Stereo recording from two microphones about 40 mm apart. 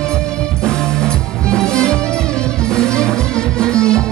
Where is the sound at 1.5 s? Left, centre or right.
Centre.